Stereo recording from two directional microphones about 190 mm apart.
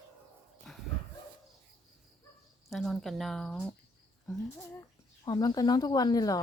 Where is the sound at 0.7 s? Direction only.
Centre (ahead or behind).